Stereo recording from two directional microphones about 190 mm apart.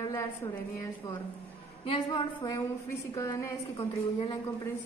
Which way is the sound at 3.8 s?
30° left (ahead or behind).